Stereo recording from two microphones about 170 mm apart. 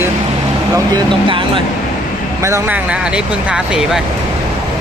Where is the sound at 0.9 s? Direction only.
30° right (ahead or behind).